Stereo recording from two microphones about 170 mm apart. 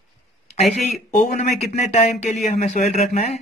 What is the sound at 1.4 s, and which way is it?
Speech, 45° left (ahead or behind).